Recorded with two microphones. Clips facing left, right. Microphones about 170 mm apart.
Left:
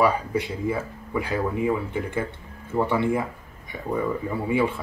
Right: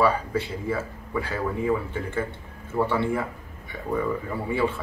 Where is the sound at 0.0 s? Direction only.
15° left (ahead or behind).